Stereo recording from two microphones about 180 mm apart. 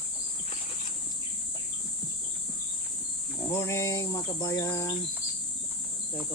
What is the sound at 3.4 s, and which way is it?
Speech, 15° left (ahead or behind).